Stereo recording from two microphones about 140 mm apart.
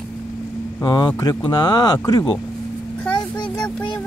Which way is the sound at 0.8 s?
30° left (ahead or behind).